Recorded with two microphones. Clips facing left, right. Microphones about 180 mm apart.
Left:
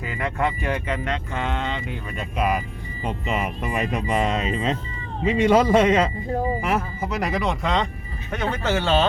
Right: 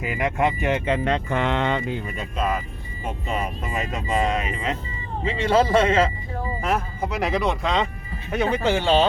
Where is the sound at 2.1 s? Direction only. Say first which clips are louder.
Left 5 dB; 10° left (ahead or behind); by 4.8 s 25° left (ahead or behind).